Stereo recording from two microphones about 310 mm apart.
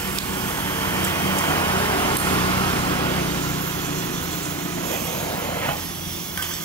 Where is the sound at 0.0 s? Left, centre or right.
Centre.